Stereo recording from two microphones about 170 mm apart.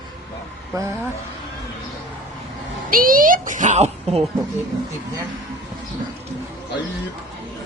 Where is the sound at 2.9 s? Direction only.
55° right (ahead or behind).